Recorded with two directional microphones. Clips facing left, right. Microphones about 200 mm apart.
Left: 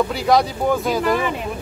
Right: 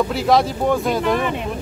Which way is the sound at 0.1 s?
Centre (ahead or behind).